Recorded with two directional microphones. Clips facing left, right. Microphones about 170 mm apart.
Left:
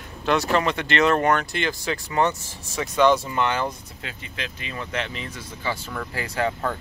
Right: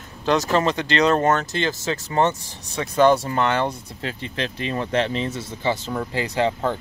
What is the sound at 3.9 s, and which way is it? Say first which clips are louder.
Speech: right 7 dB; 35° right (ahead or behind).